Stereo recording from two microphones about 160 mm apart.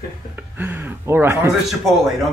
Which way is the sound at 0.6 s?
10° right (ahead or behind).